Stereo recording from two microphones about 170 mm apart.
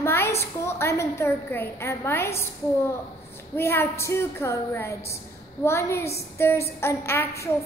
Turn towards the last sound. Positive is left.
turn(degrees=15)  # may be behind; listen again after turning